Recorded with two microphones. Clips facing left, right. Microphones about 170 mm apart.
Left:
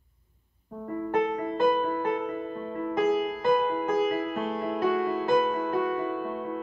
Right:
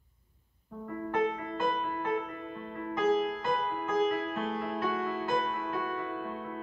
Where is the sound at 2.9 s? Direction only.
10° left (ahead or behind).